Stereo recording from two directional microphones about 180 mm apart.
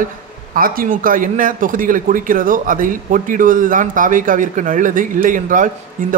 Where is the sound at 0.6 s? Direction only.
50° right (ahead or behind).